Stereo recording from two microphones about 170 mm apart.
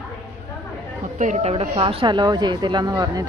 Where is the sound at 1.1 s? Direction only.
45° right (ahead or behind).